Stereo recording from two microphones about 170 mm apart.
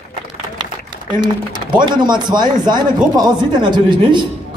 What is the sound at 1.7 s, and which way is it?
Speech, 25° right (ahead or behind).